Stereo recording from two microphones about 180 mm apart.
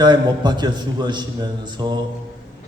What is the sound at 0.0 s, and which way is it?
A man's voice, 25° right (ahead or behind).